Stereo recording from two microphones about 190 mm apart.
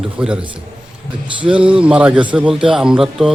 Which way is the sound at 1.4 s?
5° right (ahead or behind).